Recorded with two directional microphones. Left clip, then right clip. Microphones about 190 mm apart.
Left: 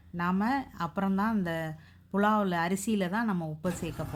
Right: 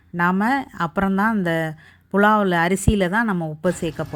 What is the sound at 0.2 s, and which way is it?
Speech, 35° right (ahead or behind).